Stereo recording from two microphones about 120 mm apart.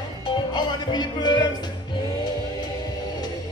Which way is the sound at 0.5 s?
35° left (ahead or behind).